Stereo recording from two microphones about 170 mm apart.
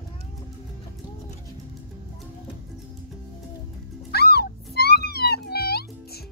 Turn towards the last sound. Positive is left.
turn(degrees=65)  # may be behind; listen again after turning